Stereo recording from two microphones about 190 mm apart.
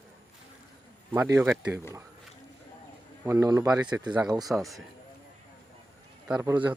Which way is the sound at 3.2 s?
15° right (ahead or behind).